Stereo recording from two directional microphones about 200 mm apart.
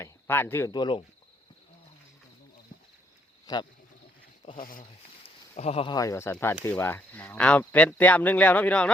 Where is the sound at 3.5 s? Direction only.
20° left (ahead or behind).